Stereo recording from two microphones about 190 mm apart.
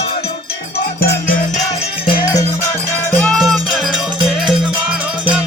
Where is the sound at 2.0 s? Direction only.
15° left (ahead or behind).